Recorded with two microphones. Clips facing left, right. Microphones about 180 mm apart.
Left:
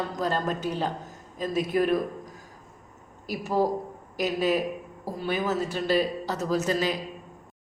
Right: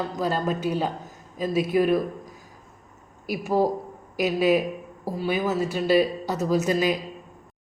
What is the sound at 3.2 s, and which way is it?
A man's voice, 10° right (ahead or behind).